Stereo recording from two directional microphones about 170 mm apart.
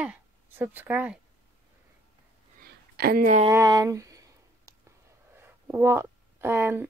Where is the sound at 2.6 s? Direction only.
65° right (ahead or behind).